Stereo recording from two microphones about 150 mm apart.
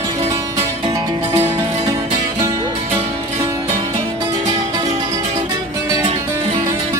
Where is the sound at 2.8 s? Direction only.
40° right (ahead or behind).